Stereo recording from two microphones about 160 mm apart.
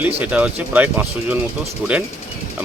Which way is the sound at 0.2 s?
5° right (ahead or behind).